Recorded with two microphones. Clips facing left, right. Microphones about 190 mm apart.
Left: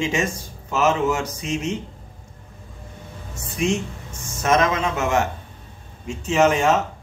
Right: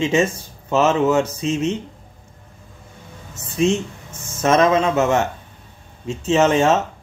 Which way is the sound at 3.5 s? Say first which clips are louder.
Right 4 dB; 25° right (ahead or behind).